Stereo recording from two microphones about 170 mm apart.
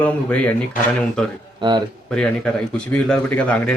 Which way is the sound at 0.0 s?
10° left (ahead or behind).